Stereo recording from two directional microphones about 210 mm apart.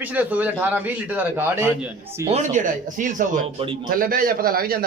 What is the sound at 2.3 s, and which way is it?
Speech, 35° right (ahead or behind).